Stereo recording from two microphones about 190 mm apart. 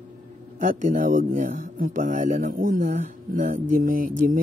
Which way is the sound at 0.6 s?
45° right (ahead or behind).